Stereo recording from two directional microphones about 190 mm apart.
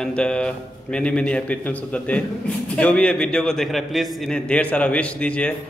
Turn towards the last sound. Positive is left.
turn(degrees=5)  # may be behind; listen again after turning